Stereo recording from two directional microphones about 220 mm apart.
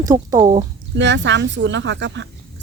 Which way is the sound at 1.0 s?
55° right (ahead or behind).